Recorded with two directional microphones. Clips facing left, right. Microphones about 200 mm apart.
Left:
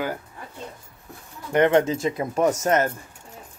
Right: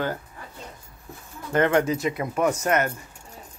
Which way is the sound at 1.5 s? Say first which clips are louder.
Left 2 dB; 20° left (ahead or behind).